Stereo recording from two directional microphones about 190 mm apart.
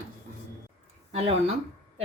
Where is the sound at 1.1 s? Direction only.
30° right (ahead or behind).